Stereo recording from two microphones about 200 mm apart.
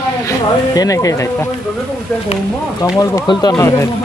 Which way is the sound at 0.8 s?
15° left (ahead or behind).